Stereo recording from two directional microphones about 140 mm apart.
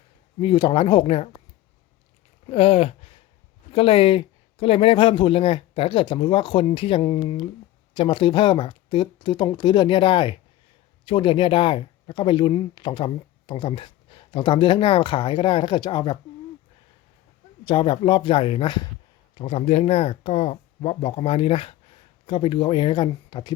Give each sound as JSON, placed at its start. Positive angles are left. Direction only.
{"t": 0.4, "sound": "speech", "side_deg": 35}
{"t": 2.5, "sound": "speech", "side_deg": 45}
{"t": 17.7, "sound": "speech", "side_deg": 35}
{"t": 19.4, "sound": "speech", "side_deg": 50}